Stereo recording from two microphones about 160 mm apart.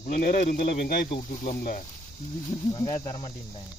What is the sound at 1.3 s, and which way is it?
Snake, 55° left (ahead or behind).